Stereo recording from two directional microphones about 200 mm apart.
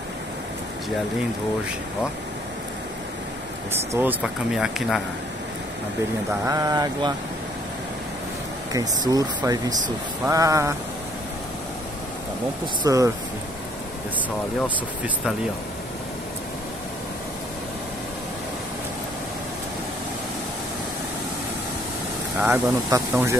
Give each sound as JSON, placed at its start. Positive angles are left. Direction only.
{"t": 3.7, "sound": "speech", "side_deg": -10}
{"t": 6.4, "sound": "speech", "side_deg": -15}
{"t": 8.7, "sound": "speech", "side_deg": -20}
{"t": 12.8, "sound": "speech", "side_deg": -15}
{"t": 22.4, "sound": "speech", "side_deg": -10}